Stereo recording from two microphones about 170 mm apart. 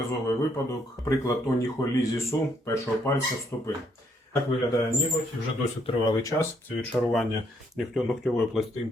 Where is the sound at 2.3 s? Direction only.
15° left (ahead or behind).